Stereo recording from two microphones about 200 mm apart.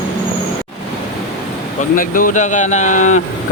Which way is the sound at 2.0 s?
45° left (ahead or behind).